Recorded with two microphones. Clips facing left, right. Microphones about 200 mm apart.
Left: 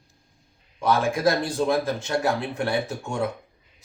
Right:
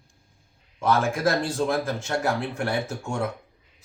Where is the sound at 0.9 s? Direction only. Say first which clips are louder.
Left 1 dB; 15° left (ahead or behind).